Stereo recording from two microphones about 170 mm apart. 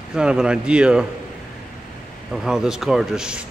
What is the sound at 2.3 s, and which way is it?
A man's voice, 5° right (ahead or behind).